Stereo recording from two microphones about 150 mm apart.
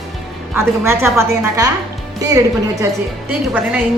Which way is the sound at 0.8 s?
15° right (ahead or behind).